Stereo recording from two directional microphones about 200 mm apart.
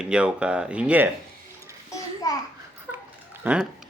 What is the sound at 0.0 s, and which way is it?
A man's voice, 5° right (ahead or behind).